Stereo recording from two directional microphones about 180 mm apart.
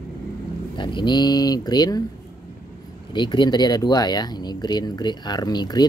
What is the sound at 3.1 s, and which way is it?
Speech, 25° left (ahead or behind).